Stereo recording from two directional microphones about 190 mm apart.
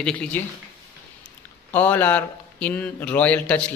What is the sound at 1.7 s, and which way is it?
A man's voice, 10° left (ahead or behind).